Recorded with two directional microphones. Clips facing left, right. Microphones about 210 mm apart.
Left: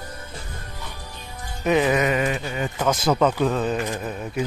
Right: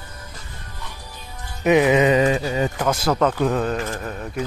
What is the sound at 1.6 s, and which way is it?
Speech, 15° right (ahead or behind).